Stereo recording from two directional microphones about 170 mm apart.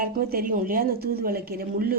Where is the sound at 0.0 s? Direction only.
55° right (ahead or behind).